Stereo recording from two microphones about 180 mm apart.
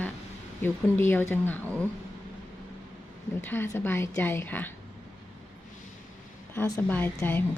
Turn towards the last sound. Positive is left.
turn(degrees=10)  # may be behind; listen again after turning